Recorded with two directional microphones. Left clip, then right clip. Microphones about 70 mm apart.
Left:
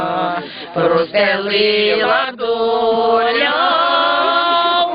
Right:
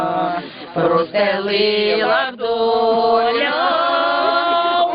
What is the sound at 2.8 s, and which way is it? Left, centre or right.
Chant, left.